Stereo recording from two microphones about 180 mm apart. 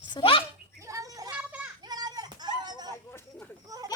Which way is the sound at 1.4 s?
5° right (ahead or behind).